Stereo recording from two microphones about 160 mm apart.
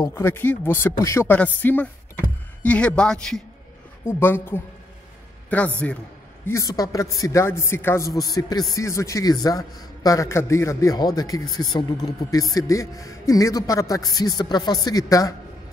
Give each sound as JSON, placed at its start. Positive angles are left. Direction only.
{"t": 0.0, "sound": "a man's voice", "side_deg": 15}
{"t": 6.4, "sound": "a man's voice", "side_deg": 20}